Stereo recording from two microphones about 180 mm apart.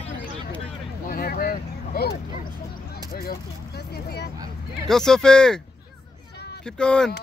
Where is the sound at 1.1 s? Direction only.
55° left (ahead or behind).